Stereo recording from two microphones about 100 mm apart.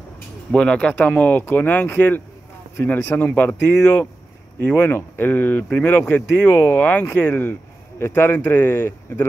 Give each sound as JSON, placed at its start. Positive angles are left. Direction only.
{"t": 0.5, "sound": "speech", "side_deg": 10}
{"t": 6.5, "sound": "speech", "side_deg": 30}
{"t": 6.8, "sound": "speech", "side_deg": 15}